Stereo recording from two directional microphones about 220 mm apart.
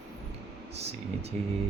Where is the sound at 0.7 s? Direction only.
30° right (ahead or behind).